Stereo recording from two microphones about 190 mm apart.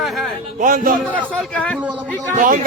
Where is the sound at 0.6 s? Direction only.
45° right (ahead or behind).